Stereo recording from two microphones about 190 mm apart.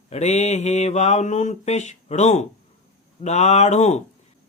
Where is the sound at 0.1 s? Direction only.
35° left (ahead or behind).